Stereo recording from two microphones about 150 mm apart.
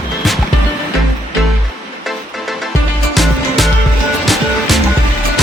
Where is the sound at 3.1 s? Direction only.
Centre (ahead or behind).